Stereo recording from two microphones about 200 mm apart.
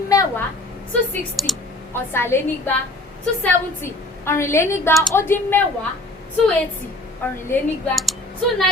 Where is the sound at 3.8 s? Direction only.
15° left (ahead or behind).